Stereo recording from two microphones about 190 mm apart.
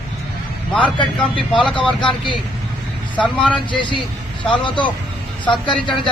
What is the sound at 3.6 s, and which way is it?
Speech, 25° left (ahead or behind).